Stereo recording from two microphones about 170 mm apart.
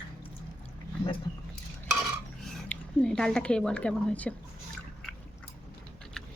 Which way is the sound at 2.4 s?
5° left (ahead or behind).